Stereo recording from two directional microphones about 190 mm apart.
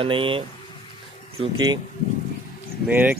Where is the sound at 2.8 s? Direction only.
10° right (ahead or behind).